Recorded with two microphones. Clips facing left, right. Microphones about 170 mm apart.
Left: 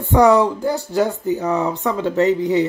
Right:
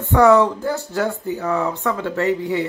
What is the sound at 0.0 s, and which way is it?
Speech, 15° left (ahead or behind).